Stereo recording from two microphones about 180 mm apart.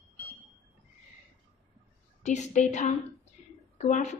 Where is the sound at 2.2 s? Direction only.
40° left (ahead or behind).